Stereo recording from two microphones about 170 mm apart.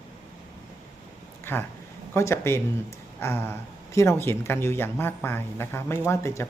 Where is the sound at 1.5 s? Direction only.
10° left (ahead or behind).